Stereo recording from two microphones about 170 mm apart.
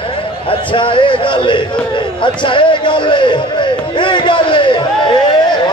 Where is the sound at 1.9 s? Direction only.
30° left (ahead or behind).